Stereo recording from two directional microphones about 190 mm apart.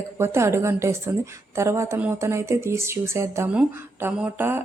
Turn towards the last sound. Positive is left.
turn(degrees=-10)  # may be behind; listen again after turning